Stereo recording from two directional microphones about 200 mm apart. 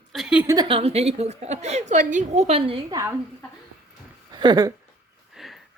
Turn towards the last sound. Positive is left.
turn(degrees=0)  # may be behind; listen again after turning